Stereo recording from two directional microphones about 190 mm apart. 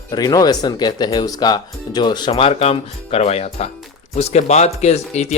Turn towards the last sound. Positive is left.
turn(degrees=35)  # may be behind; listen again after turning